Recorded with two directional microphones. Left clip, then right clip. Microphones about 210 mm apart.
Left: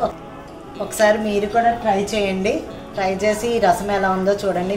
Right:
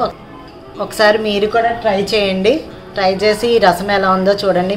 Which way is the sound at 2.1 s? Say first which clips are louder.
Right 7 dB; 40° right (ahead or behind).